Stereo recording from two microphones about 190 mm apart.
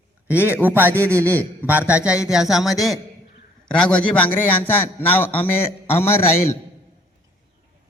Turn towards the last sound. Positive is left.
turn(degrees=10)  # may be behind; listen again after turning